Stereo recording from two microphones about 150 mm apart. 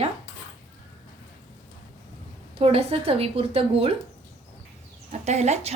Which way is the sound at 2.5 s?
40° right (ahead or behind).